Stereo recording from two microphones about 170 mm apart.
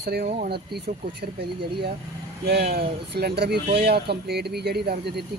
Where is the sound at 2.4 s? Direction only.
70° right (ahead or behind).